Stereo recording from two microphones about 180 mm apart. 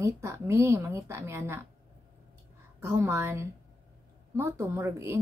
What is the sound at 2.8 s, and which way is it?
Speech, 15° right (ahead or behind).